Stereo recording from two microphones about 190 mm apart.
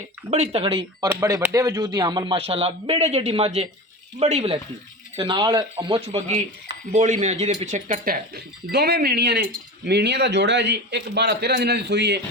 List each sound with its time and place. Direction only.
0.3 s speech: 35° right (ahead or behind)
1.0 s a man's voice: 15° right (ahead or behind); by 12.2 s 65° right (ahead or behind)